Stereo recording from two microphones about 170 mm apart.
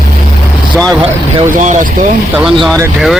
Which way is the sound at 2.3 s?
Centre (ahead or behind).